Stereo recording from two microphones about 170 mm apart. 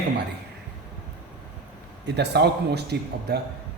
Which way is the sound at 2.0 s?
80° right.